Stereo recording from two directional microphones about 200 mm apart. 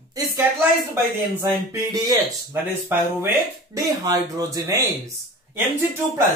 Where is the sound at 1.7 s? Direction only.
20° right (ahead or behind).